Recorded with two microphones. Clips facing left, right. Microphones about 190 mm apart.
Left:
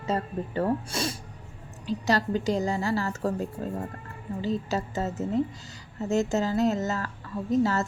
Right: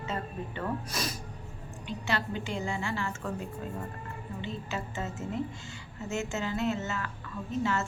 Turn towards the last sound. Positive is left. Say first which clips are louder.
# left 6 dB
turn(degrees=40)  # may be behind; listen again after turning